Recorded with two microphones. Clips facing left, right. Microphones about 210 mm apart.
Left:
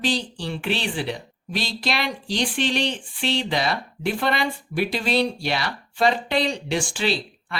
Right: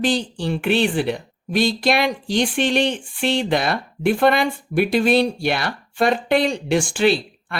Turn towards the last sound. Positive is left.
turn(degrees=-50)  # may be behind; listen again after turning